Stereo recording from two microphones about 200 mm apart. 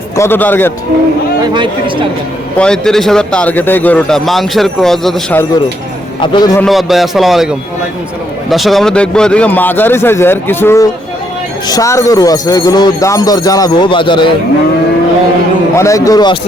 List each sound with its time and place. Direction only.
0.2 s speech: 10° left (ahead or behind)
1.5 s speech: 25° right (ahead or behind)
2.6 s speech: 5° left (ahead or behind)
6.1 s a man's voice: 20° left (ahead or behind)
6.6 s speech: centre (ahead or behind); by 14.3 s 25° left (ahead or behind)
15.7 s speech: 15° left (ahead or behind)